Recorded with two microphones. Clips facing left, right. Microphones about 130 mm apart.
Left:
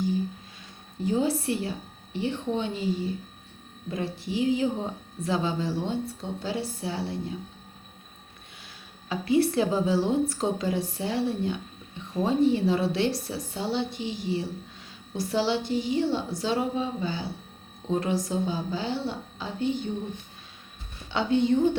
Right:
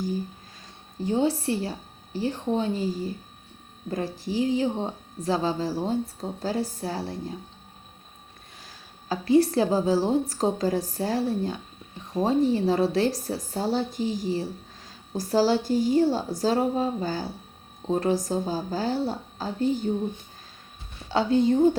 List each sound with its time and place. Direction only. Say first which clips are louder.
0.9 s speech: right 1 dB; 30° right (ahead or behind)
8.6 s speech: right 5 dB; 35° right (ahead or behind)
21.1 s speech: right 2 dB; 35° right (ahead or behind)